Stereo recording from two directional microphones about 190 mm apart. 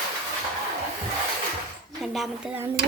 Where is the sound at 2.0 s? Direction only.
Centre (ahead or behind).